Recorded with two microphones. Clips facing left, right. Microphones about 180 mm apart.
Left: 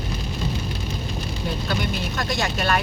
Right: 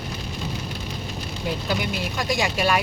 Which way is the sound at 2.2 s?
10° right (ahead or behind).